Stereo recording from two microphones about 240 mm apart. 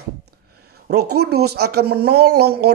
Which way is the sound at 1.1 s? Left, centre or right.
Right.